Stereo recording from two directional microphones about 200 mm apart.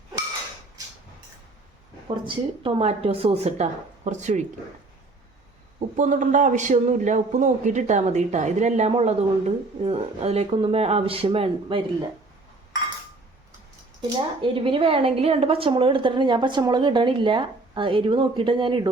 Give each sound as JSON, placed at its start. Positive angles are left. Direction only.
{"t": 2.0, "sound": "a man's voice", "side_deg": -25}
{"t": 6.0, "sound": "a man's voice", "side_deg": -40}
{"t": 14.4, "sound": "a woman's voice", "side_deg": -25}